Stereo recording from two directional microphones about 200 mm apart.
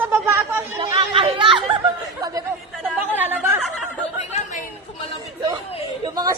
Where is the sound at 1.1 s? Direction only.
25° right (ahead or behind).